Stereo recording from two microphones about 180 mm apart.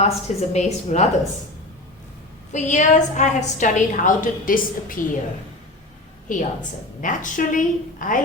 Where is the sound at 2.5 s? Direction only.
45° left (ahead or behind).